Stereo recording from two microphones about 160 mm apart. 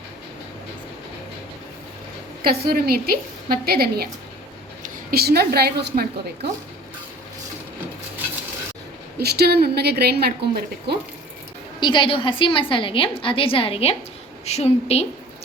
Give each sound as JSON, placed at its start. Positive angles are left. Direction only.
{"t": 2.4, "sound": "a woman's voice", "side_deg": -70}
{"t": 9.1, "sound": "a woman's voice", "side_deg": -90}
{"t": 11.8, "sound": "a woman's voice", "side_deg": 30}